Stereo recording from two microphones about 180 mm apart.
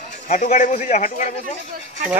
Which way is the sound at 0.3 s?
45° left (ahead or behind).